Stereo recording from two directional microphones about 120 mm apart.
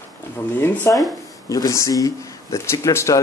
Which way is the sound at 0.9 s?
Centre (ahead or behind).